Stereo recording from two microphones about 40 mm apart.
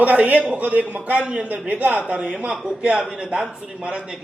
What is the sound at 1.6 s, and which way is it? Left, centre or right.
Speech, right.